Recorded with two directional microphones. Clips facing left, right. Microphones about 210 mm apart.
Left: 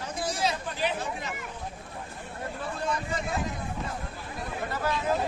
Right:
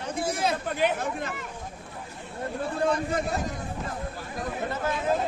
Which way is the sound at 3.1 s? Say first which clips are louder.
Right 3 dB; 40° right (ahead or behind).